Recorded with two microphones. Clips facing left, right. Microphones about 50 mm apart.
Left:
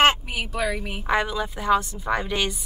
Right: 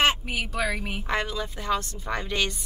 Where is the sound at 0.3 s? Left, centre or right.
Centre.